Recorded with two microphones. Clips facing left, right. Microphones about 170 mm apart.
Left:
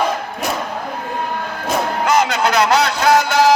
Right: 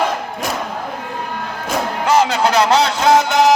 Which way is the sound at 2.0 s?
30° right (ahead or behind).